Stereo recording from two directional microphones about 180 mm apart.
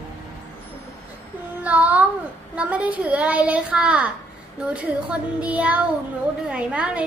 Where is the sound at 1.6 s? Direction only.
10° right (ahead or behind).